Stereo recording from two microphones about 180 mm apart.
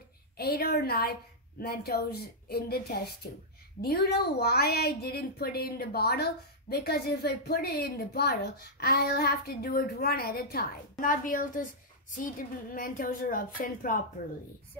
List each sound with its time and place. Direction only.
0.4 s a woman's voice: 60° left (ahead or behind)